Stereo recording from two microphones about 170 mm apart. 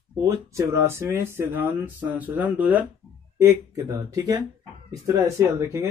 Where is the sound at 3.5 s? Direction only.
20° right (ahead or behind).